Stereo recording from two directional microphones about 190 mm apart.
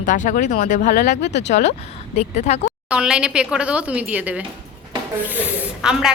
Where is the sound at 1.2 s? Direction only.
65° left (ahead or behind).